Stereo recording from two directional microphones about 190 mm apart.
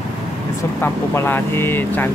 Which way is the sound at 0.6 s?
10° left (ahead or behind).